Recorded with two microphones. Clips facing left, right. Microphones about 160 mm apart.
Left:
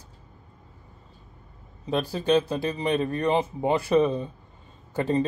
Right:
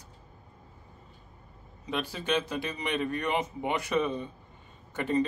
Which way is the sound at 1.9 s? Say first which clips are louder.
Left 8 dB; 35° left (ahead or behind).